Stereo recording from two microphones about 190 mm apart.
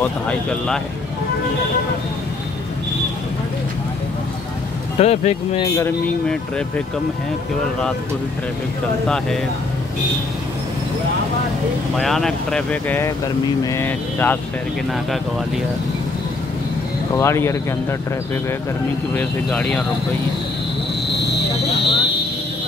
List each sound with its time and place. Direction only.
0.0 s speech: 5° left (ahead or behind)
4.9 s speech: 35° left (ahead or behind)
5.8 s speech: 10° left (ahead or behind)
9.0 s speech: centre (ahead or behind)
12.0 s speech: centre (ahead or behind)
17.2 s speech: 15° left (ahead or behind)
19.1 s speech: 5° left (ahead or behind)
21.1 s a sound: 65° left (ahead or behind)